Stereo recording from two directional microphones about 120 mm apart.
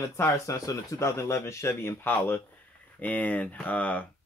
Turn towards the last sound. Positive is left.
turn(degrees=10)  # may be behind; listen again after turning